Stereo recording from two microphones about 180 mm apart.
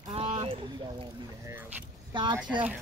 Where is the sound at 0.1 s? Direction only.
35° right (ahead or behind).